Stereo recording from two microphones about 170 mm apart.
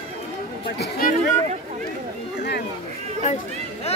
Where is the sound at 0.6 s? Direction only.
65° left (ahead or behind).